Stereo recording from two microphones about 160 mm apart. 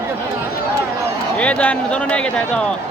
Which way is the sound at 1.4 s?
10° left (ahead or behind).